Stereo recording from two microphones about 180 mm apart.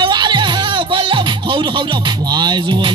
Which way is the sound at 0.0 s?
25° right (ahead or behind).